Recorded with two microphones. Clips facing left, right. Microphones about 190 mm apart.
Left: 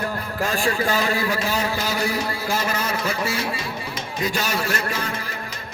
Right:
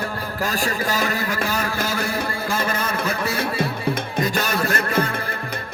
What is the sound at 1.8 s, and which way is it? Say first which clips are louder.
A man's voice: even; 55° right (ahead or behind).